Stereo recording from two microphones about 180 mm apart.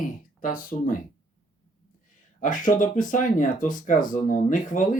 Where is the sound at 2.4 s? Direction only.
45° left (ahead or behind).